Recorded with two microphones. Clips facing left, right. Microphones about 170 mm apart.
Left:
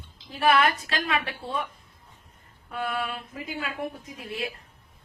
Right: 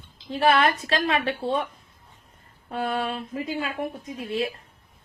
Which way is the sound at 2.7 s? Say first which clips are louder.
Right 4 dB; 30° right (ahead or behind).